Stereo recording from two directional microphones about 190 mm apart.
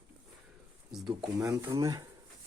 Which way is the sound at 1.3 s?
15° right (ahead or behind).